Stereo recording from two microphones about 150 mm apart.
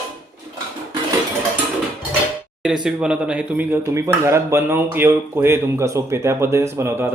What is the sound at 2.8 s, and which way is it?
Speech, 5° right (ahead or behind).